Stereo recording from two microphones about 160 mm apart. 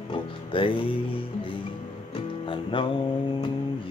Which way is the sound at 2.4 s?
30° left (ahead or behind).